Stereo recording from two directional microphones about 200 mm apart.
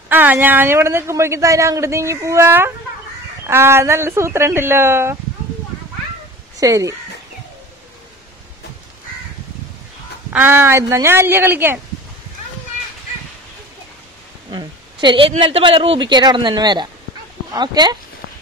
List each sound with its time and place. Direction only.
0.1 s a man's voice: 10° right (ahead or behind)
6.6 s a man's voice: 15° right (ahead or behind)
10.3 s a man's voice: 10° right (ahead or behind)
14.5 s a woman's voice: 20° right (ahead or behind)